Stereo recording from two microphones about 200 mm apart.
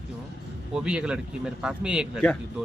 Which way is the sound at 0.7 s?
5° right (ahead or behind).